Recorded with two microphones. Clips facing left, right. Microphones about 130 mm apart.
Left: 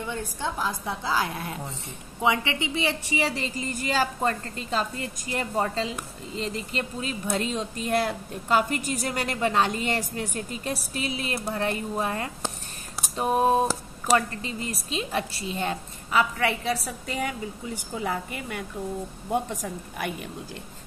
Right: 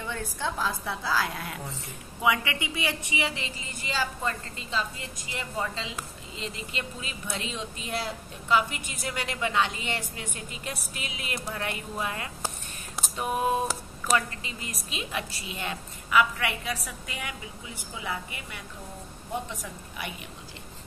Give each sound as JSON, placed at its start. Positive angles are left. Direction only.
{"t": 0.0, "sound": "a woman's voice", "side_deg": 15}